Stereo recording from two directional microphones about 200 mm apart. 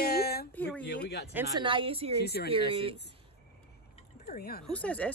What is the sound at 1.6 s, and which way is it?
Speech, 25° right (ahead or behind).